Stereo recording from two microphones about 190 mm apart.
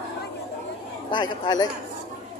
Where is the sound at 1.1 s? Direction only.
20° left (ahead or behind).